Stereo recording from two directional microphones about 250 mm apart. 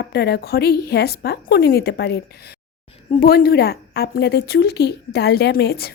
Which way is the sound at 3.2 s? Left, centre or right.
Left.